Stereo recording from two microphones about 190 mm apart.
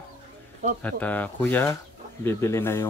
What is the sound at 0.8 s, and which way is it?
Speech, 10° left (ahead or behind).